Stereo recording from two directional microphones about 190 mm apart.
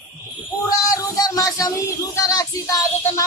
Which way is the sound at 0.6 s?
20° left (ahead or behind).